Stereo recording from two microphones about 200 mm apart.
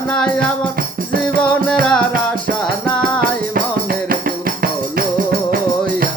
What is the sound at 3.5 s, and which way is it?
Music, 45° right (ahead or behind).